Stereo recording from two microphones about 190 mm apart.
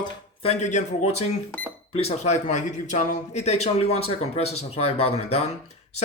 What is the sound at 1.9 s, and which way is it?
Speech, 30° left (ahead or behind).